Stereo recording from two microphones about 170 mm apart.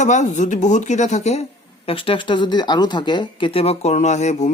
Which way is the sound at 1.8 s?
30° left (ahead or behind).